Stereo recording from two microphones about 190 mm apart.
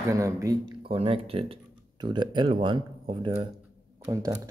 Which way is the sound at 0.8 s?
30° right (ahead or behind).